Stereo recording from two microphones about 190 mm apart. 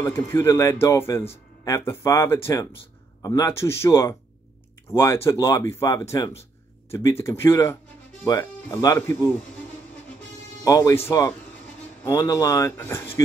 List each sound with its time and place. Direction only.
0.0 s speech: 15° left (ahead or behind)
10.6 s speech: 20° left (ahead or behind)